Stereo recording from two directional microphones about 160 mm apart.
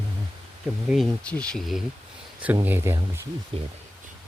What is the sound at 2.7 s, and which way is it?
Speech, 15° right (ahead or behind).